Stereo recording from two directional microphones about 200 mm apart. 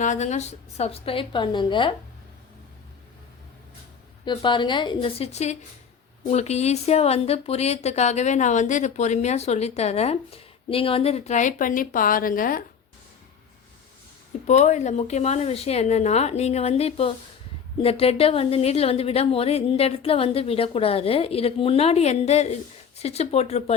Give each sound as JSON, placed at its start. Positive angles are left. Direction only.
{"t": 0.0, "sound": "a woman's voice", "side_deg": 35}
{"t": 4.3, "sound": "a woman's voice", "side_deg": 25}
{"t": 14.4, "sound": "a woman's voice", "side_deg": 35}